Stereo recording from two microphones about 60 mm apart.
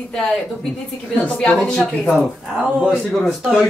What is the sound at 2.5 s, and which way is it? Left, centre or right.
Speech, centre.